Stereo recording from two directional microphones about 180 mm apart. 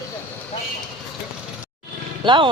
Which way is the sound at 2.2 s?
25° right (ahead or behind).